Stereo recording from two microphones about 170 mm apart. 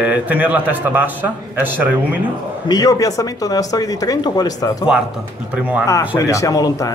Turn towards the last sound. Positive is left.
turn(degrees=20)  # may be behind; listen again after turning